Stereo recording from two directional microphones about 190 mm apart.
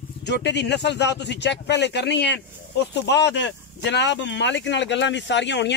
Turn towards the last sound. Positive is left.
turn(degrees=65)  # may be behind; listen again after turning